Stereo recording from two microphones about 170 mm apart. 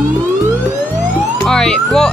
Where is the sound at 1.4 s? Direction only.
5° left (ahead or behind).